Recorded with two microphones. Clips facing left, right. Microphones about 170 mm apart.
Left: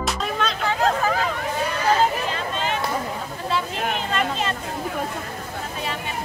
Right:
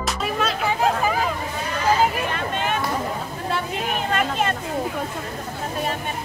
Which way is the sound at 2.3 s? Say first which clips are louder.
Right 1 dB; 55° right (ahead or behind).